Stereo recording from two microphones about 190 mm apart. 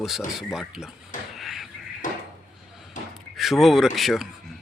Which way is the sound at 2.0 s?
45° left (ahead or behind).